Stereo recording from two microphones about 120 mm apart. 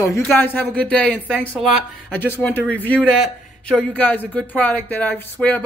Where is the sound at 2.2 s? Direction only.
15° left (ahead or behind).